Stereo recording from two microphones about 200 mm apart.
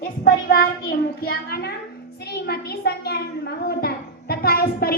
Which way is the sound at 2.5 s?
50° left (ahead or behind).